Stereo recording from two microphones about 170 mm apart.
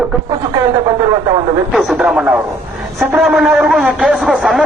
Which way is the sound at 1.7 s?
5° right (ahead or behind).